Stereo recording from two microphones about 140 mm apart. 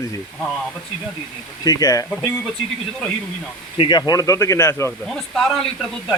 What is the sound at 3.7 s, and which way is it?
Speech, 35° left (ahead or behind).